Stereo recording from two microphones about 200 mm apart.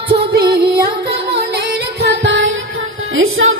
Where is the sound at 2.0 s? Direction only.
60° right (ahead or behind).